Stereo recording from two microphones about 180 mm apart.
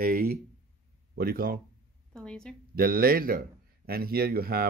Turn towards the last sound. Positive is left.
turn(degrees=-55)  # may be behind; listen again after turning